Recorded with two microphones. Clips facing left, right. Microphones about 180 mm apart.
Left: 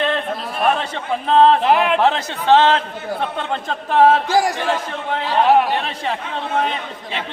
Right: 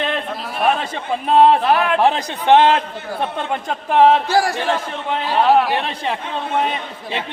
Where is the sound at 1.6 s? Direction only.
20° left (ahead or behind).